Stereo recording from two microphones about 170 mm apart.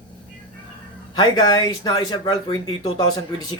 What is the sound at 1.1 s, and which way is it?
Speech, 25° left (ahead or behind).